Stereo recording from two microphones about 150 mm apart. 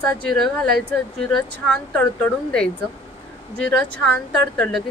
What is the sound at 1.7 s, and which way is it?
Speech, 5° left (ahead or behind).